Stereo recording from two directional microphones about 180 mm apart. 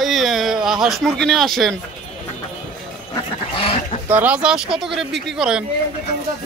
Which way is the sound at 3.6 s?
30° left (ahead or behind).